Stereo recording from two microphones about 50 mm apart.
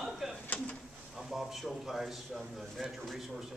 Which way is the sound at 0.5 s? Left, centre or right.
Left.